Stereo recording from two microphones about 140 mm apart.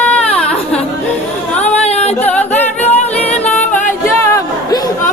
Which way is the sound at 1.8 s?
50° left (ahead or behind).